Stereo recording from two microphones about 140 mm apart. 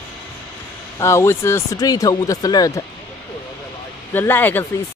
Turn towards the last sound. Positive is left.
turn(degrees=15)  # may be behind; listen again after turning